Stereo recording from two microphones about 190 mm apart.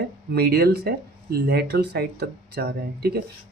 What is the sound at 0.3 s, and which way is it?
Speech, 55° right (ahead or behind).